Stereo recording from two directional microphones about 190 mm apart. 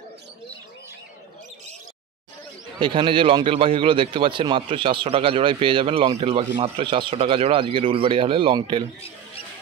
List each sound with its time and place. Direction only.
2.8 s a man's voice: 25° right (ahead or behind)